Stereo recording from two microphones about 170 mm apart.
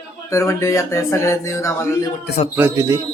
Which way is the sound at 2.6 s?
20° right (ahead or behind).